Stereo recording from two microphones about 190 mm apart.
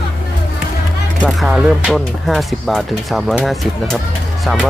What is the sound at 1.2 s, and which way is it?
Speech, centre (ahead or behind).